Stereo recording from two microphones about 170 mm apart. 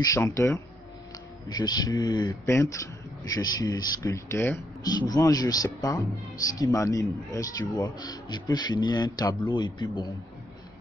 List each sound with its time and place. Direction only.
0.0 s a man's voice: 15° left (ahead or behind)